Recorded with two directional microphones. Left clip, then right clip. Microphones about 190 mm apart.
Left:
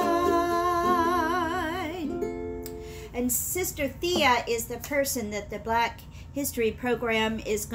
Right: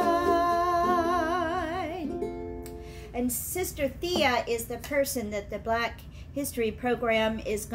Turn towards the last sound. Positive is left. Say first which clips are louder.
# even
turn(degrees=0)  # may be behind; listen again after turning